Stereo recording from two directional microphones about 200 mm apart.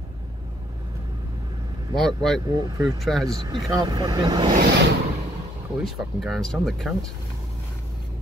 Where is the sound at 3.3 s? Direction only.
20° right (ahead or behind).